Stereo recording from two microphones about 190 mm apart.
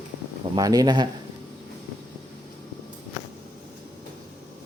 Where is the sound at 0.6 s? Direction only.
20° right (ahead or behind).